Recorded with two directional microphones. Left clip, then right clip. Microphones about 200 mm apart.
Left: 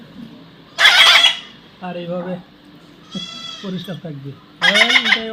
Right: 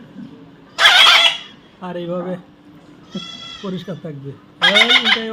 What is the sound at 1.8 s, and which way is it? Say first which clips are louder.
Speech: right 1 dB; 10° right (ahead or behind).